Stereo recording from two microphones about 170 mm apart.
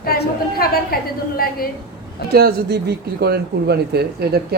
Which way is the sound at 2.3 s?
70° right (ahead or behind).